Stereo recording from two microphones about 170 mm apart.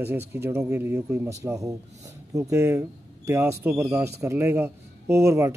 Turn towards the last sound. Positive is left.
turn(degrees=-15)  # may be behind; listen again after turning